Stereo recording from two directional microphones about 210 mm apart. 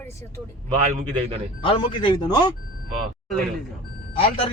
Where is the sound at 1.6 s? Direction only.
25° left (ahead or behind).